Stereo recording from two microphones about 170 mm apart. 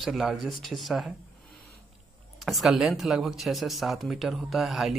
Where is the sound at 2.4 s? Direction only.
Centre (ahead or behind).